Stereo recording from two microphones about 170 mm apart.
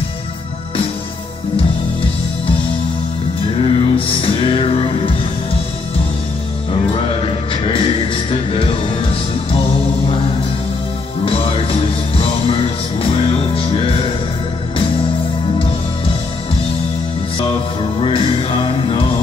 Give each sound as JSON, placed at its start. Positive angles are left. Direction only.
{"t": 3.5, "sound": "music", "side_deg": 35}
{"t": 7.2, "sound": "music", "side_deg": 30}
{"t": 11.2, "sound": "music", "side_deg": 35}
{"t": 18.0, "sound": "music", "side_deg": 35}